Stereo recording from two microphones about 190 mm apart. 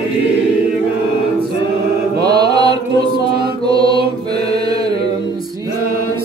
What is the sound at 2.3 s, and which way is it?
Mantra, 20° right (ahead or behind).